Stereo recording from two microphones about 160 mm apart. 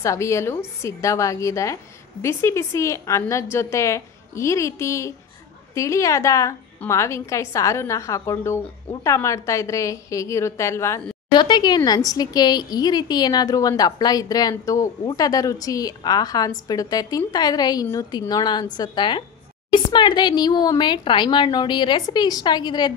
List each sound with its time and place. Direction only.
0.0 s a woman's voice: 20° left (ahead or behind)